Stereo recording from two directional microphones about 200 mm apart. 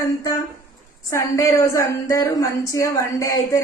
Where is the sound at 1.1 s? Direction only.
15° left (ahead or behind).